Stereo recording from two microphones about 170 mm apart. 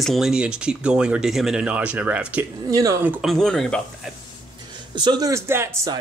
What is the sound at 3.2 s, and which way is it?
Speech, 5° left (ahead or behind).